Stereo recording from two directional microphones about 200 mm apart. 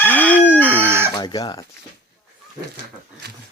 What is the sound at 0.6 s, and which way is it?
Chicken, 10° right (ahead or behind).